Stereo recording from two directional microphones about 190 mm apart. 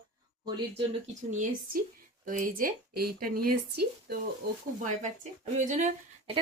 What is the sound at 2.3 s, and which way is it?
Speech, 45° right (ahead or behind).